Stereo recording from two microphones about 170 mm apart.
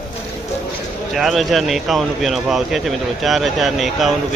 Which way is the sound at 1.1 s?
Centre (ahead or behind).